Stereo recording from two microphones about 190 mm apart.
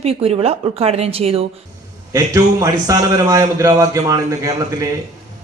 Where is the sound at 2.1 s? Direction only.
15° right (ahead or behind).